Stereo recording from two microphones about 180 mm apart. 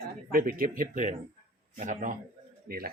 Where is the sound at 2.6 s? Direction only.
55° right (ahead or behind).